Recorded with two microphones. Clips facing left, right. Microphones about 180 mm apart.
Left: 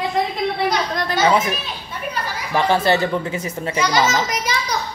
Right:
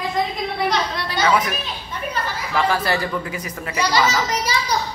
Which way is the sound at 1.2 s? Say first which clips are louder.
Left 1 dB; 25° left (ahead or behind).